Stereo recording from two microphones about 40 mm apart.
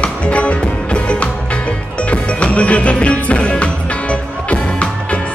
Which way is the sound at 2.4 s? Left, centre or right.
Left.